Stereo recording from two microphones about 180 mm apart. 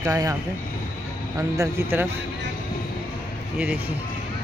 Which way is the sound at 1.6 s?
15° right (ahead or behind).